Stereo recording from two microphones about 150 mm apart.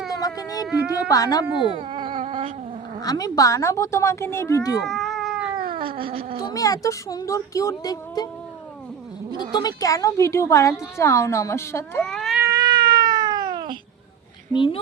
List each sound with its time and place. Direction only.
0.2 s speech: 25° left (ahead or behind)
1.7 s a sound: 35° right (ahead or behind)
2.1 s cat: 60° right (ahead or behind)
3.0 s a woman's voice: 25° left (ahead or behind)
4.8 s cat: centre (ahead or behind)
6.0 s speech: 35° right (ahead or behind)
6.5 s a woman's voice: 20° left (ahead or behind)
9.4 s a woman's voice: 30° left (ahead or behind)
12.0 s cat: 5° left (ahead or behind)
12.4 s cat: 25° right (ahead or behind)
14.5 s a woman's voice: 35° left (ahead or behind)